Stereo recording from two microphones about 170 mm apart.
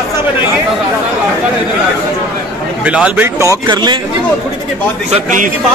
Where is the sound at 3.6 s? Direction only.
25° right (ahead or behind).